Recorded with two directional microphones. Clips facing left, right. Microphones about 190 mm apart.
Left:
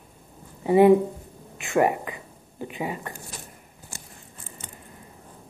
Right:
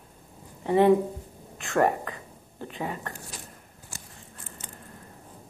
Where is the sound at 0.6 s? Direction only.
10° left (ahead or behind).